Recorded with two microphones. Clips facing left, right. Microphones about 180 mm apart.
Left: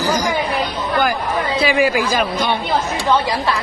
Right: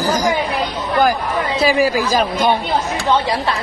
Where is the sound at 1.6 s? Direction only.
40° right (ahead or behind).